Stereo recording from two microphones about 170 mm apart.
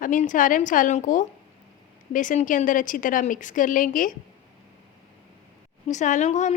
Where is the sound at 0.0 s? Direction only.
50° left (ahead or behind).